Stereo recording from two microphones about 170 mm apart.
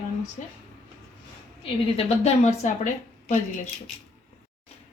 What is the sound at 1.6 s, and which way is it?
A woman's voice, 40° left (ahead or behind).